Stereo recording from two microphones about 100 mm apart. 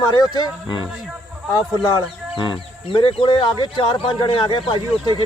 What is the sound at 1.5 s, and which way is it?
Speech, 45° left (ahead or behind).